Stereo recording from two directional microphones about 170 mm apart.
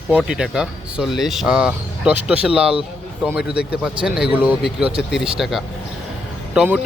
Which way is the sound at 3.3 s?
70° left (ahead or behind).